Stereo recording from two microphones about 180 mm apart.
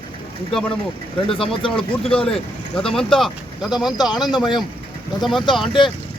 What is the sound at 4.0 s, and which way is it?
Speech, 20° left (ahead or behind).